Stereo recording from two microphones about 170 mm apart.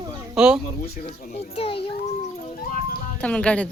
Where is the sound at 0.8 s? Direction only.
60° left (ahead or behind).